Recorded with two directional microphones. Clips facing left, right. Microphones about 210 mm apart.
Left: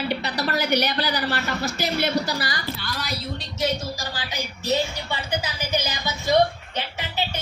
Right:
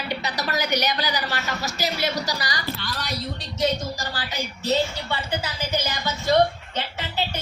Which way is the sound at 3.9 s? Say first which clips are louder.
Right 1 dB; 15° left (ahead or behind).